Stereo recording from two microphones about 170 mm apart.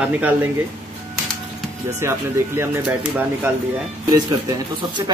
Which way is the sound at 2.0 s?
15° right (ahead or behind).